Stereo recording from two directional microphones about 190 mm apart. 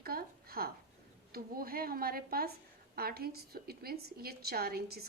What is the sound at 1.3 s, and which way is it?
A woman's voice, 50° right (ahead or behind).